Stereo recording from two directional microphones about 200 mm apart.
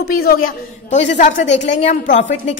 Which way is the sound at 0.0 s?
50° left (ahead or behind).